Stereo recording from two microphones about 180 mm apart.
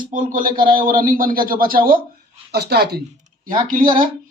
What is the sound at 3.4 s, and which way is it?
Speech, 50° right (ahead or behind).